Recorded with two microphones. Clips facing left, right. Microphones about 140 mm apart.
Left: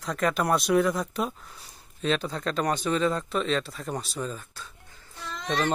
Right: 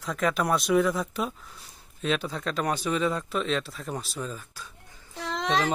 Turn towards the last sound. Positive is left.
turn(degrees=-90)